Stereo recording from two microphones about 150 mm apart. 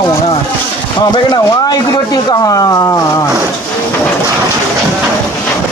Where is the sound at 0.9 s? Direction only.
25° left (ahead or behind).